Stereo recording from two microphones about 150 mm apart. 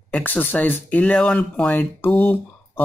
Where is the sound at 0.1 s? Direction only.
10° left (ahead or behind).